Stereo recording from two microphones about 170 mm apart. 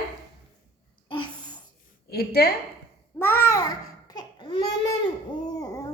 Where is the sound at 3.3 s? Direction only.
20° left (ahead or behind).